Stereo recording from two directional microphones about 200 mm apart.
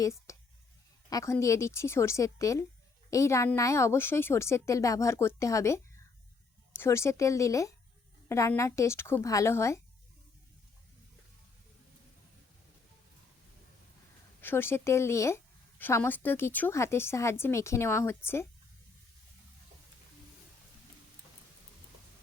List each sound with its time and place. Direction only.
0.0 s a woman's voice: 15° left (ahead or behind)
14.4 s a woman's voice: 10° left (ahead or behind)